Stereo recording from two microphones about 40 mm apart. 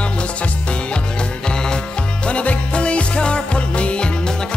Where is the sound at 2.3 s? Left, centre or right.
Left.